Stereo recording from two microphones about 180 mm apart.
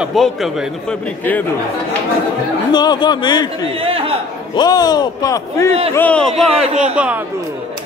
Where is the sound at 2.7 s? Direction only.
25° left (ahead or behind).